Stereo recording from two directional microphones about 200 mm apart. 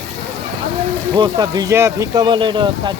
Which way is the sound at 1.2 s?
20° right (ahead or behind).